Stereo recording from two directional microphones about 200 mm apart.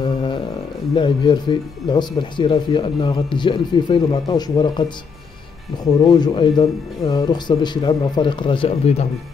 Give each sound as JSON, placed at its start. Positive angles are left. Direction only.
{"t": 0.0, "sound": "a sound", "side_deg": 25}
{"t": 0.9, "sound": "speech", "side_deg": 25}
{"t": 6.0, "sound": "speech", "side_deg": 20}